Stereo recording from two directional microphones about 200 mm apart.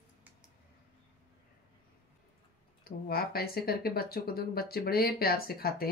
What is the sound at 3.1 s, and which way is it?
Speech, 50° left (ahead or behind).